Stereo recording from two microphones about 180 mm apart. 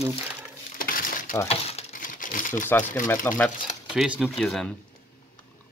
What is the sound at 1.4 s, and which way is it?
Speech, 35° left (ahead or behind).